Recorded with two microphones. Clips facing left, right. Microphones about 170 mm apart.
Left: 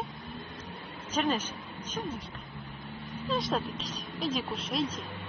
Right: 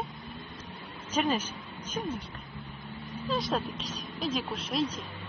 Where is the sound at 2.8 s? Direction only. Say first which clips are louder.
Right 1 dB; centre (ahead or behind).